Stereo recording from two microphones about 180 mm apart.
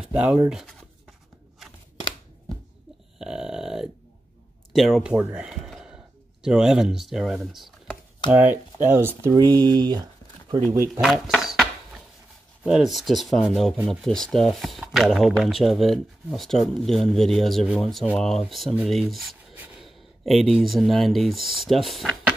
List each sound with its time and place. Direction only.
0.0 s speech: 5° right (ahead or behind)
1.6 s scissors: centre (ahead or behind)
3.2 s a sound: 5° right (ahead or behind)
4.7 s speech: centre (ahead or behind); by 10.0 s 25° right (ahead or behind)
10.9 s speech: centre (ahead or behind)
12.6 s speech: centre (ahead or behind)